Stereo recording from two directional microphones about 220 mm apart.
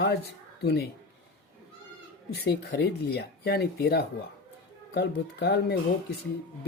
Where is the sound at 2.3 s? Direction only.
50° left (ahead or behind).